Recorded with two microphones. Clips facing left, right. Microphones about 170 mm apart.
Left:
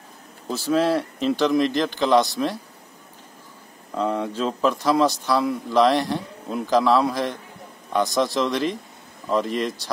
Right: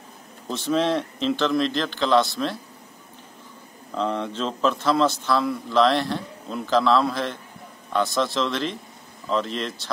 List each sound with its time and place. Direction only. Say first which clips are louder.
0.7 s a man's voice: left 2 dB; 5° left (ahead or behind)
3.9 s a man's voice: left 2 dB; 10° left (ahead or behind)